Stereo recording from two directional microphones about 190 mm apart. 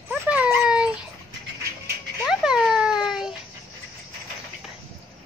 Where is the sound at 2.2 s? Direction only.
5° right (ahead or behind).